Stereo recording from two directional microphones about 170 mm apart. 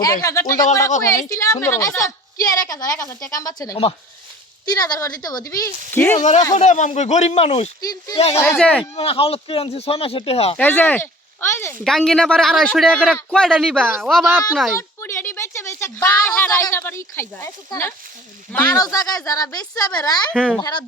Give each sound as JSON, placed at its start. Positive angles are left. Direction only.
{"t": 0.0, "sound": "a woman's voice", "side_deg": 20}
{"t": 6.5, "sound": "speech", "side_deg": 45}
{"t": 7.8, "sound": "a woman's voice", "side_deg": 20}
{"t": 8.5, "sound": "a woman's voice", "side_deg": 5}
{"t": 9.0, "sound": "speech", "side_deg": 35}
{"t": 10.6, "sound": "speech", "side_deg": 10}
{"t": 11.8, "sound": "speech", "side_deg": 0}
{"t": 14.8, "sound": "a woman's voice", "side_deg": 15}
{"t": 20.3, "sound": "speech", "side_deg": -5}
{"t": 20.6, "sound": "a woman's voice", "side_deg": 20}